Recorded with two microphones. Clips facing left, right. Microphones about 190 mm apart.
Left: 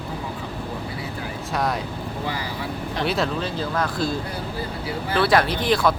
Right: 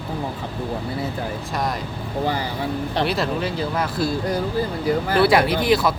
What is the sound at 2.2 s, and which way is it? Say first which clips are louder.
Speech: right 7 dB; 30° right (ahead or behind).